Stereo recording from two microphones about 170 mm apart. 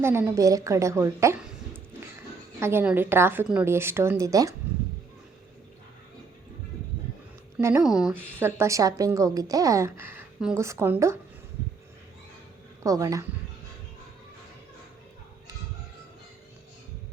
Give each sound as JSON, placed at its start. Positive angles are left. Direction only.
{"t": 0.0, "sound": "a woman's voice", "side_deg": -15}
{"t": 7.6, "sound": "a woman's voice", "side_deg": -15}
{"t": 7.9, "sound": "a woman's voice", "side_deg": -5}
{"t": 12.8, "sound": "speech", "side_deg": -20}